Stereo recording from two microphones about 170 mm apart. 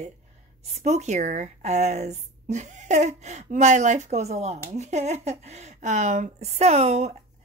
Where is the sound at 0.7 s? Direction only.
40° right (ahead or behind).